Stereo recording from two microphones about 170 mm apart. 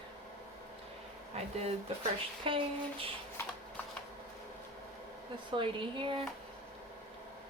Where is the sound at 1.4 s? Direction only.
35° right (ahead or behind).